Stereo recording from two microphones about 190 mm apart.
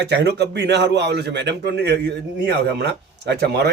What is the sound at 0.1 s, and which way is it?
Speech, 60° right (ahead or behind).